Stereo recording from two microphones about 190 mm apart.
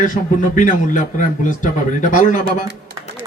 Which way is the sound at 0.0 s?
45° left (ahead or behind).